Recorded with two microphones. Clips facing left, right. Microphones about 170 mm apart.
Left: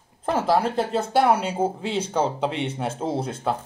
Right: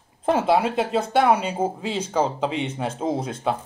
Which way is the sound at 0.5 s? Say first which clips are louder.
Right 1 dB; 5° right (ahead or behind).